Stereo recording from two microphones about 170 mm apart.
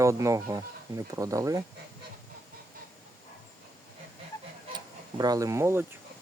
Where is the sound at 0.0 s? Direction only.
15° right (ahead or behind).